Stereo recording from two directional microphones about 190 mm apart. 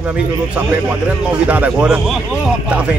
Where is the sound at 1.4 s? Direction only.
5° right (ahead or behind).